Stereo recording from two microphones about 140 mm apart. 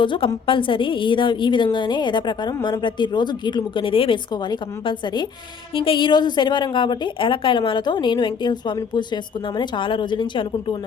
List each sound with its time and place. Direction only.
0.0 s a woman's voice: 35° left (ahead or behind)